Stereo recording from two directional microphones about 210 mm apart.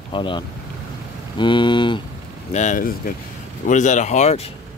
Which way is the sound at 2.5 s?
35° left (ahead or behind).